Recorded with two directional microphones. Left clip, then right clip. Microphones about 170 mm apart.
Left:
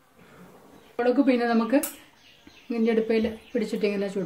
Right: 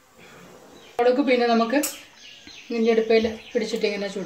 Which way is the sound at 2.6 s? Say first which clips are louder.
Right 4 dB; 55° left (ahead or behind).